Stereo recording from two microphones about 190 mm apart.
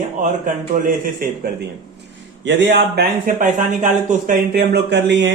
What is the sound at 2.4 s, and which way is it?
Speech, 65° right (ahead or behind).